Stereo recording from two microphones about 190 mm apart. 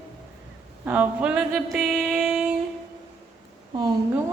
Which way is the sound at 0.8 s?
10° right (ahead or behind).